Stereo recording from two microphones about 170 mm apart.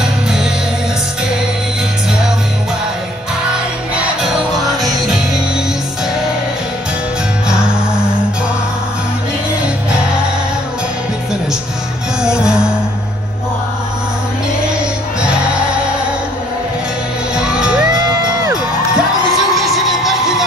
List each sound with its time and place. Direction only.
0.0 s music: 5° right (ahead or behind)
3.9 s music: 5° right (ahead or behind)
7.4 s music: 5° right (ahead or behind)
12.2 s music: 5° right (ahead or behind)
17.4 s music: 5° right (ahead or behind)
18.2 s music: 20° right (ahead or behind)
18.9 s music: centre (ahead or behind)